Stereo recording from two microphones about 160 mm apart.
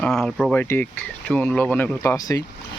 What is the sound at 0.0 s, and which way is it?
Speech, 5° left (ahead or behind).